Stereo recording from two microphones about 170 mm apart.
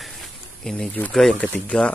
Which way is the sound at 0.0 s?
Centre (ahead or behind).